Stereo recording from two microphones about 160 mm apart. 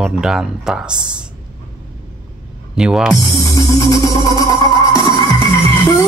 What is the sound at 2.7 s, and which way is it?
Speech, 5° right (ahead or behind).